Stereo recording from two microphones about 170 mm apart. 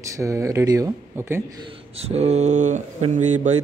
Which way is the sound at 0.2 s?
20° right (ahead or behind).